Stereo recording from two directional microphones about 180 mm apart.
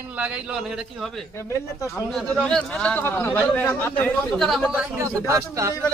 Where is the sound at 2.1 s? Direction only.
Centre (ahead or behind).